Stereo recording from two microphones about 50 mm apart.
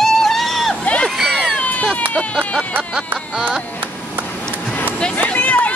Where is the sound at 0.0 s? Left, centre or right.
Centre.